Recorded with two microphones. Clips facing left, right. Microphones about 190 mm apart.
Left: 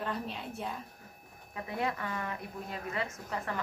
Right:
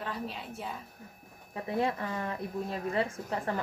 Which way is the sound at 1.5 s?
30° right (ahead or behind).